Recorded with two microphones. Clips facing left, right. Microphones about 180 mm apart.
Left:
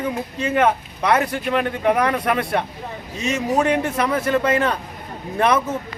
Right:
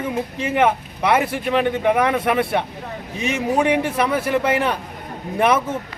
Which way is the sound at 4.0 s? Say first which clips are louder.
Even; 10° right (ahead or behind).